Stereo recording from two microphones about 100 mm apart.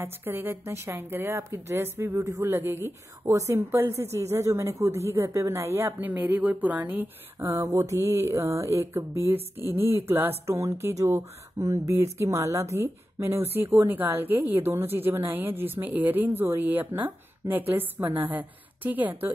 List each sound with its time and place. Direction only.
0.0 s speech: 20° right (ahead or behind)
7.3 s speech: 35° right (ahead or behind); by 19.3 s 20° right (ahead or behind)